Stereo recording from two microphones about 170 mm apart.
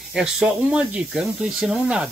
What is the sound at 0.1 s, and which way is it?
Speech, 5° right (ahead or behind).